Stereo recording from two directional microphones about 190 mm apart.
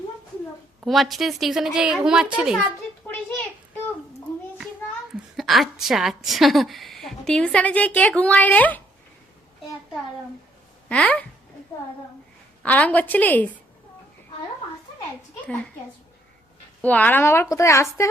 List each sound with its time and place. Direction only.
0.9 s a woman's voice: centre (ahead or behind)
5.4 s a woman's voice: centre (ahead or behind)
10.8 s speech: 5° left (ahead or behind)
12.6 s a woman's voice: 10° left (ahead or behind)
16.8 s a woman's voice: 10° left (ahead or behind)